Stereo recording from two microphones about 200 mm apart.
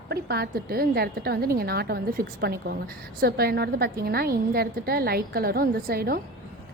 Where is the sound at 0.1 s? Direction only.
50° right (ahead or behind).